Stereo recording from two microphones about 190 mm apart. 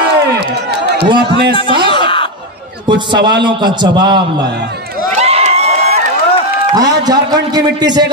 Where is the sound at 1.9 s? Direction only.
25° left (ahead or behind).